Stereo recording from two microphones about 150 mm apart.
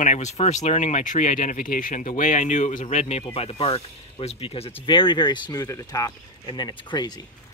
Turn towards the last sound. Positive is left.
turn(degrees=30)  # may be behind; listen again after turning